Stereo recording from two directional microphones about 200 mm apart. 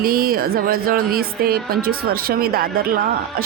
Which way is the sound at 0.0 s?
50° right (ahead or behind).